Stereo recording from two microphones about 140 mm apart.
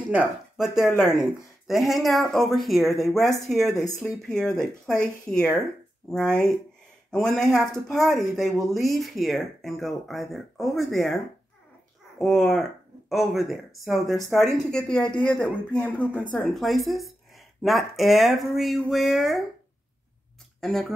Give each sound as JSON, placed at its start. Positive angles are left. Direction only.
{"t": 0.8, "sound": "speech", "side_deg": 15}
{"t": 1.2, "sound": "speech", "side_deg": 0}
{"t": 12.2, "sound": "speech", "side_deg": 0}
{"t": 20.6, "sound": "speech", "side_deg": 0}